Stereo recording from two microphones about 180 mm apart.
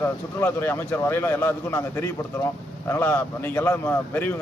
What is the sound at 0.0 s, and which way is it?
A man's voice, 15° left (ahead or behind).